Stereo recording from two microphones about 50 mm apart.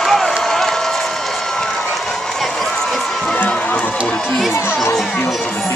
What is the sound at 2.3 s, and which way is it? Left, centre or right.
Run, centre.